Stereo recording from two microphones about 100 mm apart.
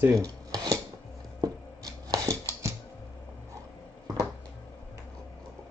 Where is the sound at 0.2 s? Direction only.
35° right (ahead or behind).